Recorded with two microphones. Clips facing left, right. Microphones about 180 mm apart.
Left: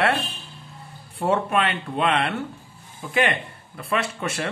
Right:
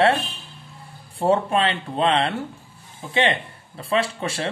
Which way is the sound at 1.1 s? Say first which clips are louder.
Right 2 dB; 30° right (ahead or behind).